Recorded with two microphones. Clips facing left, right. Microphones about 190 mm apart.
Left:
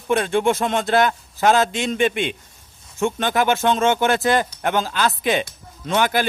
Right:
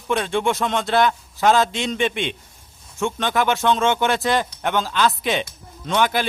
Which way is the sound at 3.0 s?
40° left (ahead or behind).